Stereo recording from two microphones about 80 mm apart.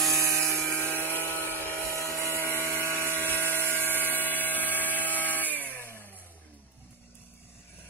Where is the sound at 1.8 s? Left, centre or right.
Right.